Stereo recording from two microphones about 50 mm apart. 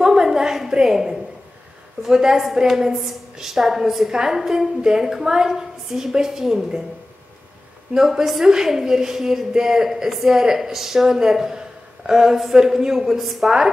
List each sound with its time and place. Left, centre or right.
0.0 s a sound: centre
2.0 s a woman's voice: centre
7.9 s a woman's voice: centre